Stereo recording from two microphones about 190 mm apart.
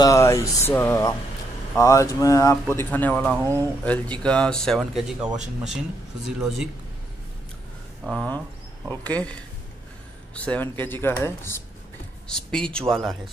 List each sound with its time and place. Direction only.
0.0 s music: 15° left (ahead or behind)
3.3 s speech: 15° right (ahead or behind)
3.8 s speech: 5° left (ahead or behind)
8.0 s speech: centre (ahead or behind)
9.0 s music: 5° left (ahead or behind)
12.3 s speech: 5° left (ahead or behind)